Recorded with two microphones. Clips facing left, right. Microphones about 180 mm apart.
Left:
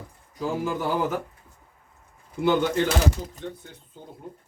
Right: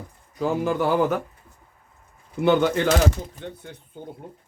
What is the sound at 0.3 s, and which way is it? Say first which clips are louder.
Speech: right 4 dB; 65° right (ahead or behind).